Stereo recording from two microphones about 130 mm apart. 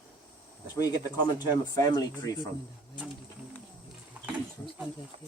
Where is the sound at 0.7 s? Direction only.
30° left (ahead or behind).